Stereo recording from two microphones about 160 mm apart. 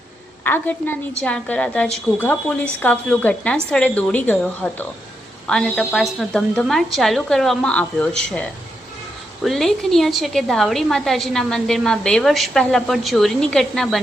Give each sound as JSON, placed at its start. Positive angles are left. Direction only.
{"t": 0.4, "sound": "a woman's voice", "side_deg": 15}